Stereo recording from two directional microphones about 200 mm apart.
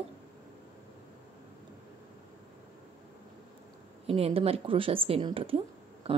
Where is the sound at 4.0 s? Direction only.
30° right (ahead or behind).